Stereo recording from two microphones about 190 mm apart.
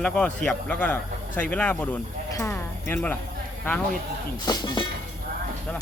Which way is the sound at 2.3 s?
15° left (ahead or behind).